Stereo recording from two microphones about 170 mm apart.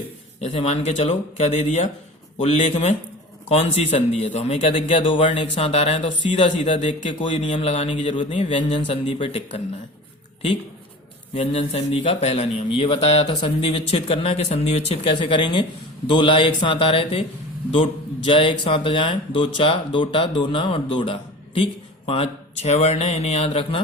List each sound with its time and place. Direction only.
0.3 s a man's voice: 40° left (ahead or behind)
7.0 s speech: 30° left (ahead or behind)
11.3 s speech: 40° left (ahead or behind)